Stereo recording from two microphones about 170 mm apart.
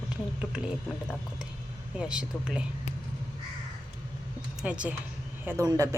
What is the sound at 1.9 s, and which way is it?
Speech, 5° right (ahead or behind).